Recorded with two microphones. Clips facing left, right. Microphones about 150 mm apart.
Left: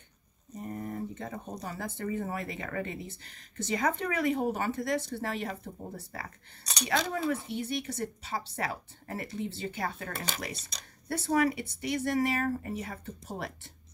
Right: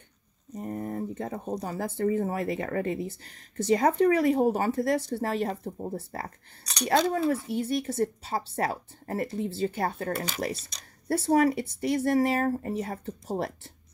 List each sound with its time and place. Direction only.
0.6 s speech: 40° right (ahead or behind)
6.9 s speech: 40° right (ahead or behind)